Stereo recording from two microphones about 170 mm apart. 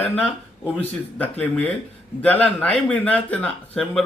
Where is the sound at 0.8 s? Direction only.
10° left (ahead or behind).